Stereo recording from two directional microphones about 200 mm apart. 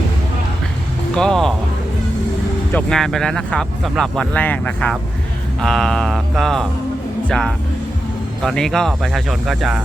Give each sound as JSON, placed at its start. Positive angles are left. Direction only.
{"t": 1.1, "sound": "speech", "side_deg": 5}
{"t": 2.7, "sound": "speech", "side_deg": 0}